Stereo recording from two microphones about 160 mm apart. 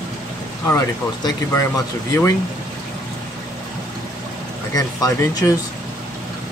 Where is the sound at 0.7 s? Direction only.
20° left (ahead or behind).